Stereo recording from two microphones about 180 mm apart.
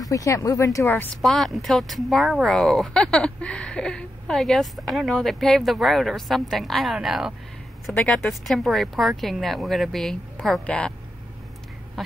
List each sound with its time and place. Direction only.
0.0 s speech: 20° left (ahead or behind)
1.2 s speech: centre (ahead or behind)